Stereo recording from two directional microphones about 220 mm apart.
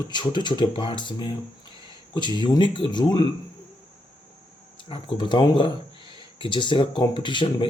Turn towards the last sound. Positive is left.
turn(degrees=20)  # may be behind; listen again after turning